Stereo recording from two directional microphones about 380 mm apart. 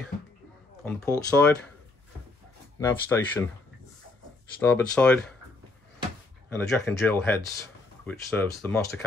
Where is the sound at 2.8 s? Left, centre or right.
Centre.